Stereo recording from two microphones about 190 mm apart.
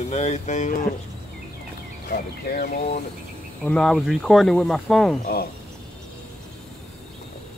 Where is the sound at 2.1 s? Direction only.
50° left (ahead or behind).